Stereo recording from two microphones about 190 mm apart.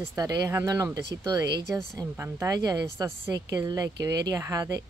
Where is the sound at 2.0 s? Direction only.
15° right (ahead or behind).